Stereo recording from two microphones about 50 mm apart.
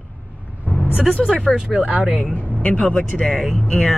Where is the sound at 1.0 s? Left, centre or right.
Centre.